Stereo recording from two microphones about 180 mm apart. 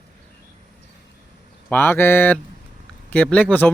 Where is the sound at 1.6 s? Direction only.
10° left (ahead or behind).